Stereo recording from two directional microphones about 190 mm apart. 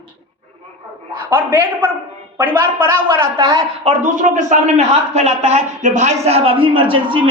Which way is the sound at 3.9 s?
35° right (ahead or behind).